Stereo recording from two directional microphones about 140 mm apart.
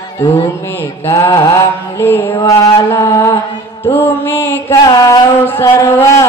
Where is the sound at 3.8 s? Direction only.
15° left (ahead or behind).